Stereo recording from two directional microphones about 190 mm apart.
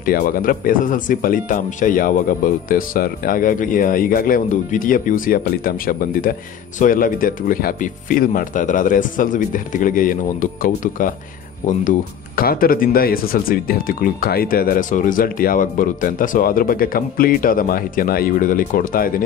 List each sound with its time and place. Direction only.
0.0 s speech: 50° left (ahead or behind)